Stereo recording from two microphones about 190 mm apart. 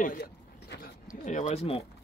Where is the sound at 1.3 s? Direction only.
35° left (ahead or behind).